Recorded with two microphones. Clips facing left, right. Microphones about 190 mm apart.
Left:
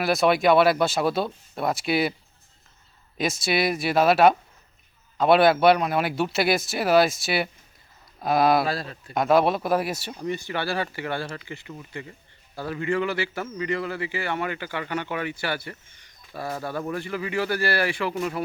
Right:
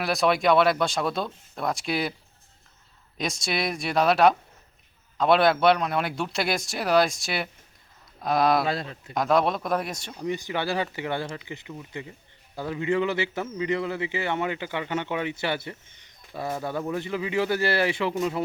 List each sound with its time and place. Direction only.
0.0 s a man's voice: centre (ahead or behind)
3.2 s a man's voice: 5° left (ahead or behind)
8.6 s speech: 20° right (ahead or behind)
9.1 s a man's voice: 5° left (ahead or behind)
10.2 s speech: 15° right (ahead or behind)